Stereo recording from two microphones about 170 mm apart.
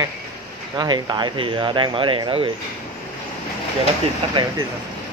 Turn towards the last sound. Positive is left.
turn(degrees=-30)  # may be behind; listen again after turning